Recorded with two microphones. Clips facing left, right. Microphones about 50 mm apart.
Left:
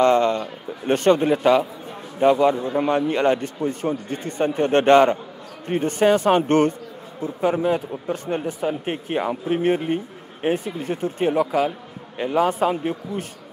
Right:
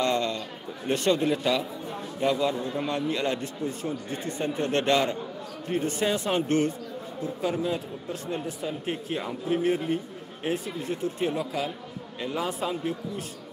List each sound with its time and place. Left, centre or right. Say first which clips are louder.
0.0 s a man's voice: left 9 dB; left